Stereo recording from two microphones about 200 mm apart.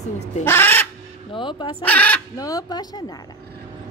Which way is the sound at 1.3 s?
25° left (ahead or behind).